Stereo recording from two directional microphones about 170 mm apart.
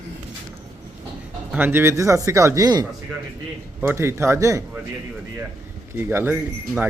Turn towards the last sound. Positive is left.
turn(degrees=-15)  # may be behind; listen again after turning